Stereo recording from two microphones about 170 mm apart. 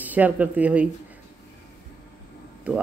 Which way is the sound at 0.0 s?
10° right (ahead or behind).